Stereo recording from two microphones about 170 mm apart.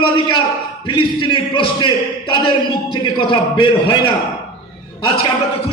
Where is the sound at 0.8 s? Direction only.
30° left (ahead or behind).